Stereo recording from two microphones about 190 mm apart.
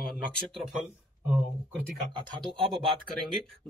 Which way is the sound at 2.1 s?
25° right (ahead or behind).